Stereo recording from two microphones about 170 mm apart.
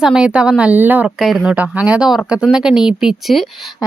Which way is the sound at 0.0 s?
5° right (ahead or behind).